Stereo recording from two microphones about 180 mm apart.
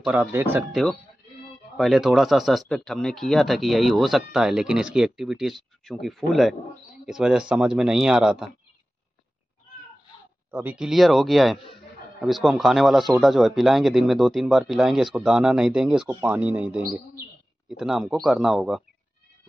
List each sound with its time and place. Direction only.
0.0 s speech: 10° right (ahead or behind)
1.8 s speech: centre (ahead or behind)
10.5 s speech: 10° right (ahead or behind)